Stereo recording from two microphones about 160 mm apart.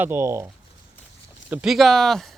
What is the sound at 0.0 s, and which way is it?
Speech, 15° right (ahead or behind).